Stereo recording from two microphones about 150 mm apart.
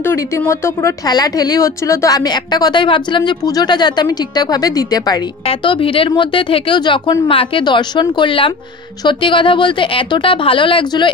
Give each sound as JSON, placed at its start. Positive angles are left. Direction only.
{"t": 0.0, "sound": "speech", "side_deg": 15}